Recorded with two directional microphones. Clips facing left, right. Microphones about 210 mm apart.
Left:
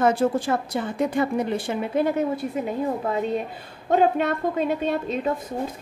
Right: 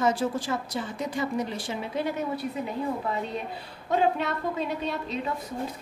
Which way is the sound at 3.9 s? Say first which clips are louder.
Left 5 dB; 50° left (ahead or behind).